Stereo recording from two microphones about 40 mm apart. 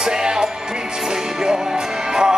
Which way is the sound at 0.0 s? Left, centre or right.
Centre.